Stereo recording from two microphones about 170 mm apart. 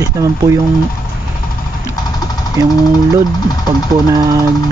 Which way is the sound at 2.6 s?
20° right (ahead or behind).